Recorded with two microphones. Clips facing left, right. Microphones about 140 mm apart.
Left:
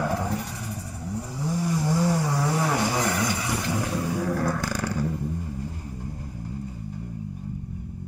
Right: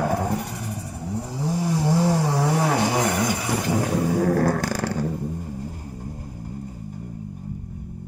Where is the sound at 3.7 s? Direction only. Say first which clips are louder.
Right 7 dB; 50° right (ahead or behind).